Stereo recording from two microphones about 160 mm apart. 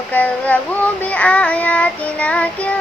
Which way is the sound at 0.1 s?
10° left (ahead or behind).